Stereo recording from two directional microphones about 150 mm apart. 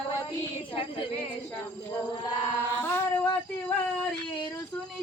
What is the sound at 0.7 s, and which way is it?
Speech, 35° left (ahead or behind).